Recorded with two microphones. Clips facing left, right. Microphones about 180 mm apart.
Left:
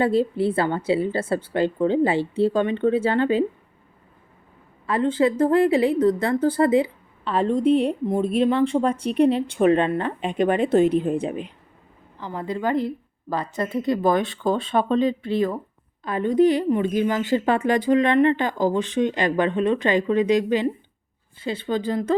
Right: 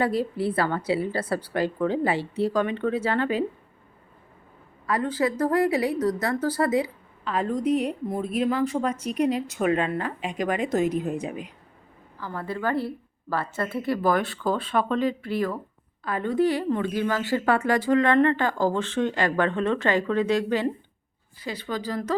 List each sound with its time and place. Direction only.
0.0 s speech: 25° left (ahead or behind)
4.9 s speech: 25° left (ahead or behind)